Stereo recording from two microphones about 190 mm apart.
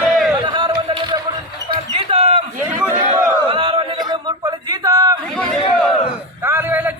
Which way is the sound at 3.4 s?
25° right (ahead or behind).